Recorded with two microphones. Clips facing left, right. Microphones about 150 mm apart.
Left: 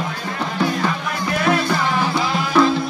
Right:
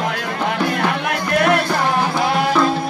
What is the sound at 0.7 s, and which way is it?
Music, 65° right (ahead or behind).